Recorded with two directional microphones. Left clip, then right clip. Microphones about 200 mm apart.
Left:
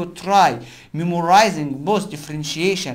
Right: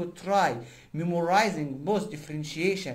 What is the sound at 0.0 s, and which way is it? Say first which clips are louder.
Speech: left 10 dB; 25° left (ahead or behind).